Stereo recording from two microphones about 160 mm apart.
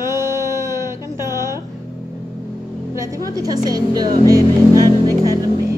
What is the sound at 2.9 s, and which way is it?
A woman's voice, 20° right (ahead or behind).